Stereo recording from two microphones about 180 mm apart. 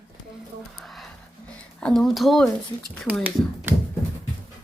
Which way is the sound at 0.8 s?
Centre (ahead or behind).